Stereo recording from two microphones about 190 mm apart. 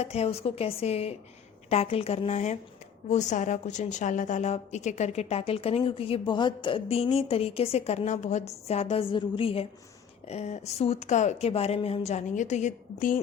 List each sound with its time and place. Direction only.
0.0 s a woman's voice: 35° left (ahead or behind)